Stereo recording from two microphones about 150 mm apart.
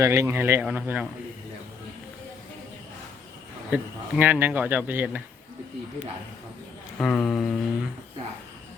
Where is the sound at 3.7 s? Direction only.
10° right (ahead or behind).